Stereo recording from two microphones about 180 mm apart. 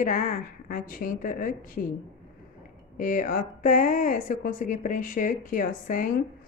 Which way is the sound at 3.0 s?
45° left (ahead or behind).